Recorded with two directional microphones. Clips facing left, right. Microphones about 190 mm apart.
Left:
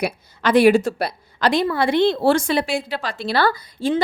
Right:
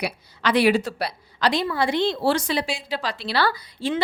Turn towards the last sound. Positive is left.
turn(degrees=45)  # may be behind; listen again after turning